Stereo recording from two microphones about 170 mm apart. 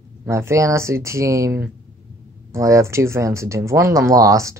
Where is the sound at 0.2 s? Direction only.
15° right (ahead or behind).